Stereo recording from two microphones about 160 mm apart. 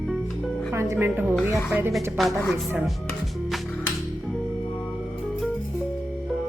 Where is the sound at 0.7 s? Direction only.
15° right (ahead or behind).